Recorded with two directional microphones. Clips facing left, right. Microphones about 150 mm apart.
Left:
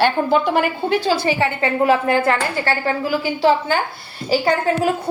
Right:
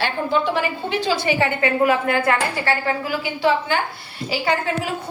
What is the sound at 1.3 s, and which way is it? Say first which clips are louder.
A woman's voice: left 1 dB; 30° left (ahead or behind).